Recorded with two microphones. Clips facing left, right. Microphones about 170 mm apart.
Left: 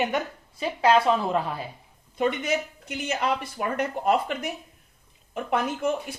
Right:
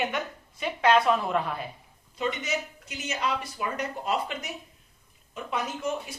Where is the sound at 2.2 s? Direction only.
55° left (ahead or behind).